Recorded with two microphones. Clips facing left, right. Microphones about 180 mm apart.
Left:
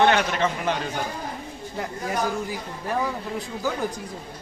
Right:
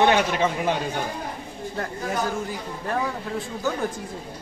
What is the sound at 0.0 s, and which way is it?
Speech, 10° right (ahead or behind).